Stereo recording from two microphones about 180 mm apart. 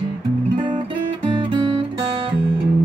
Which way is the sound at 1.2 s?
30° right (ahead or behind).